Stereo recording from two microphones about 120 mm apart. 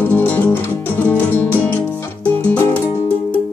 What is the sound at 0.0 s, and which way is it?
Music, 15° left (ahead or behind).